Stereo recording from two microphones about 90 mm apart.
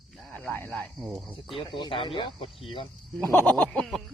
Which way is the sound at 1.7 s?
60° left (ahead or behind).